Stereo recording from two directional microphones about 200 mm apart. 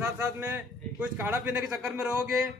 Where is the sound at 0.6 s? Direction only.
10° right (ahead or behind).